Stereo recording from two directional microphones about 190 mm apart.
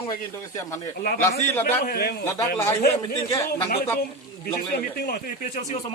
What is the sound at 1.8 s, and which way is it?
Speech, 50° left (ahead or behind).